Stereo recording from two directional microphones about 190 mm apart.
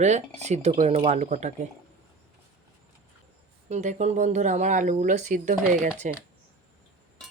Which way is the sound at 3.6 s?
40° right (ahead or behind).